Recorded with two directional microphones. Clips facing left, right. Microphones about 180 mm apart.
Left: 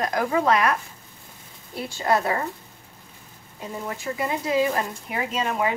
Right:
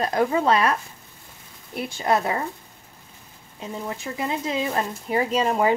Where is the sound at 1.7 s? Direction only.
20° right (ahead or behind).